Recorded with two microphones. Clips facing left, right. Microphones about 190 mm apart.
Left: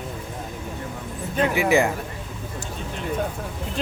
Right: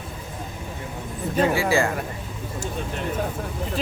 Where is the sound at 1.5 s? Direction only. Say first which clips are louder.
Left 2 dB; 20° left (ahead or behind).